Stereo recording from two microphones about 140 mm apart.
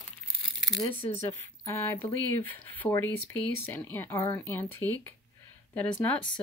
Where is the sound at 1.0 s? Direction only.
45° left (ahead or behind).